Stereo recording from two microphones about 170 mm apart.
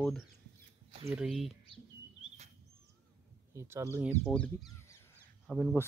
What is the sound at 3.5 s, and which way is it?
Speech, 15° right (ahead or behind).